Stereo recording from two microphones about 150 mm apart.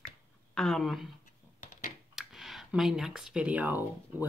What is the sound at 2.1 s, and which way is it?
A woman's voice, centre (ahead or behind).